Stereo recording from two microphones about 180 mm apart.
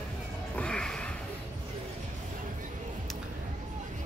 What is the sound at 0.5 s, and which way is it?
Music, 5° left (ahead or behind).